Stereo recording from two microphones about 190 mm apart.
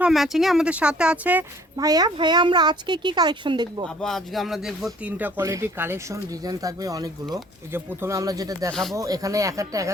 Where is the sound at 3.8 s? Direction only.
Centre (ahead or behind); by 8.7 s 20° right (ahead or behind).